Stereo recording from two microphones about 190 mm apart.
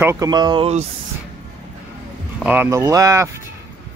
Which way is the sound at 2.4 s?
10° right (ahead or behind).